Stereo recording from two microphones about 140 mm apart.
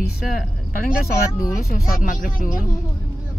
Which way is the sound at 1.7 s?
85° left.